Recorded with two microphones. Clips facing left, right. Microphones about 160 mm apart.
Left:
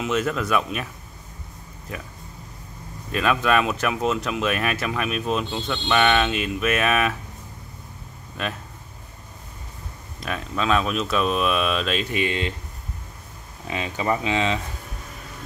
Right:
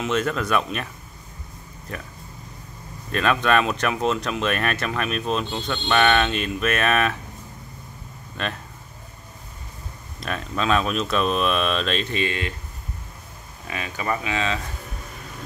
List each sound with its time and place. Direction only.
0.0 s speech: 5° left (ahead or behind)
1.9 s speech: 5° left (ahead or behind)
3.1 s speech: 5° left (ahead or behind)
8.4 s speech: 5° left (ahead or behind)
10.2 s speech: 5° left (ahead or behind); by 12.5 s 20° left (ahead or behind)
13.7 s speech: 20° left (ahead or behind)